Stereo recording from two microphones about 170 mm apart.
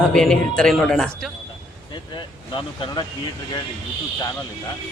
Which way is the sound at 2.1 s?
30° left (ahead or behind).